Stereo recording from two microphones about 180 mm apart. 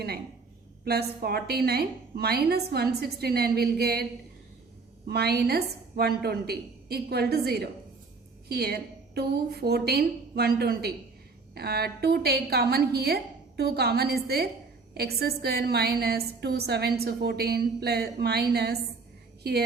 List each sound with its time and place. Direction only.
0.9 s a woman's voice: 60° right (ahead or behind)
5.0 s a woman's voice: 65° right (ahead or behind)